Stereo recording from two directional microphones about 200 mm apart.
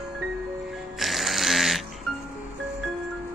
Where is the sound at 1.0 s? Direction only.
Centre (ahead or behind).